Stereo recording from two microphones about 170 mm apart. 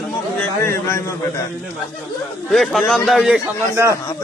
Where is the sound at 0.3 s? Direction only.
15° left (ahead or behind).